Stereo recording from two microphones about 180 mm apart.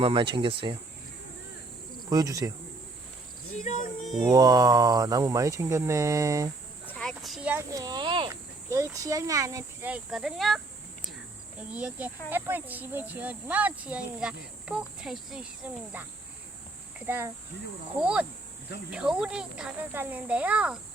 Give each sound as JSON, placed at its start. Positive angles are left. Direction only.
{"t": 0.0, "sound": "speech", "side_deg": -30}
{"t": 2.0, "sound": "speech", "side_deg": -20}
{"t": 3.6, "sound": "a sound", "side_deg": 45}
{"t": 4.2, "sound": "speech", "side_deg": -20}
{"t": 6.8, "sound": "a sound", "side_deg": 5}
{"t": 7.7, "sound": "speech", "side_deg": -20}
{"t": 8.3, "sound": "speech", "side_deg": -15}
{"t": 9.9, "sound": "speech", "side_deg": -5}
{"t": 11.7, "sound": "speech", "side_deg": -10}
{"t": 17.1, "sound": "speech", "side_deg": -15}